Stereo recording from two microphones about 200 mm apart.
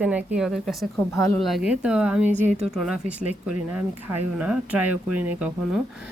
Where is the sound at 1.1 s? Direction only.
15° left (ahead or behind).